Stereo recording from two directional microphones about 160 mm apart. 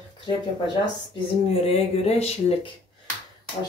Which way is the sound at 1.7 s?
40° left (ahead or behind).